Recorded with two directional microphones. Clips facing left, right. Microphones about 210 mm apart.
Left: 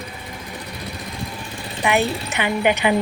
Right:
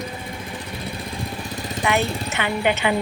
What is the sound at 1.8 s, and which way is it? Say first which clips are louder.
A woman's voice: left 2 dB; 15° left (ahead or behind).